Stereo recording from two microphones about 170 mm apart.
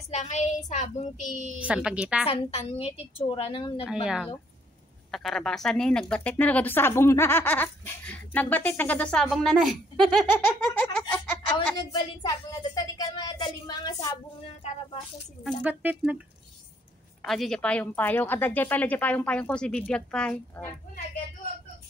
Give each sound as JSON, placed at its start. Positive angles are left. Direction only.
{"t": 0.1, "sound": "a woman's voice", "side_deg": 45}
{"t": 1.6, "sound": "speech", "side_deg": -5}
{"t": 2.2, "sound": "a woman's voice", "side_deg": 35}
{"t": 3.8, "sound": "a woman's voice", "side_deg": -5}
{"t": 10.6, "sound": "a sound", "side_deg": 10}
{"t": 11.5, "sound": "a woman's voice", "side_deg": 25}
{"t": 15.4, "sound": "speech", "side_deg": -10}
{"t": 17.2, "sound": "a woman's voice", "side_deg": 5}